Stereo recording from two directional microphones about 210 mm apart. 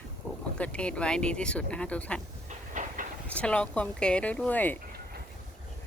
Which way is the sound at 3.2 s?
5° left (ahead or behind).